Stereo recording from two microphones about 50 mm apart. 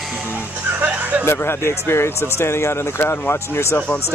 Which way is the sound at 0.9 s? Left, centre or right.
Right.